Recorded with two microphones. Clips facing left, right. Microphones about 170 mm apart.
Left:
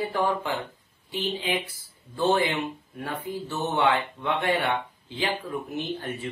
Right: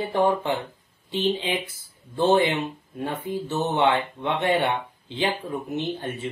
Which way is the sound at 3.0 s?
25° right (ahead or behind).